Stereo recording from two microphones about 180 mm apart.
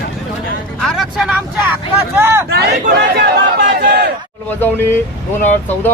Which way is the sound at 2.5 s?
65° right (ahead or behind).